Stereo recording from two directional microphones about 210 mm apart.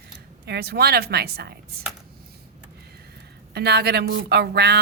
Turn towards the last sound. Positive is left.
turn(degrees=-50)  # may be behind; listen again after turning